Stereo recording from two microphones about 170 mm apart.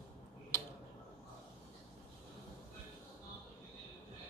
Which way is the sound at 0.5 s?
15° left (ahead or behind).